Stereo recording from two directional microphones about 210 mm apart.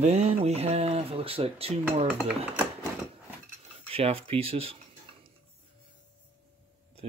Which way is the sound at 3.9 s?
25° right (ahead or behind).